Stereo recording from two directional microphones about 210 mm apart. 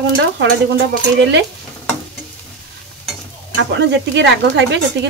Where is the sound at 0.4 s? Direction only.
55° right (ahead or behind).